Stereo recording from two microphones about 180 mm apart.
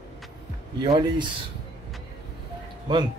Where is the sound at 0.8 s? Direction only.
20° right (ahead or behind).